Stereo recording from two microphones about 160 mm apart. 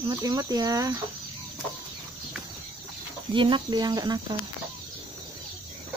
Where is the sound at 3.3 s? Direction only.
30° right (ahead or behind).